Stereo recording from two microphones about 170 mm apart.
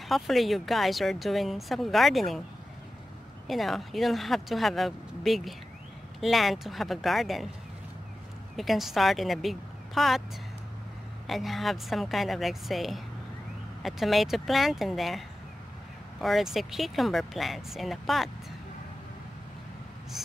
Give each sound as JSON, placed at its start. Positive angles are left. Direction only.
{"t": 0.1, "sound": "speech", "side_deg": 0}
{"t": 3.4, "sound": "speech", "side_deg": 0}
{"t": 8.5, "sound": "speech", "side_deg": 0}
{"t": 11.2, "sound": "speech", "side_deg": 0}